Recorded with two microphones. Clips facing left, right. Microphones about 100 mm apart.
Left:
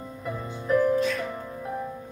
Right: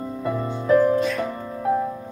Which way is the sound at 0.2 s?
90° right.